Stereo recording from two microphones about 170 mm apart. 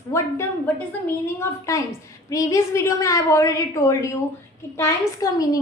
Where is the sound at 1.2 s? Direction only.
15° left (ahead or behind).